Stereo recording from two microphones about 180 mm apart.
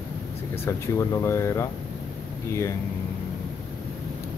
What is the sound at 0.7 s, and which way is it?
Speech, 15° left (ahead or behind).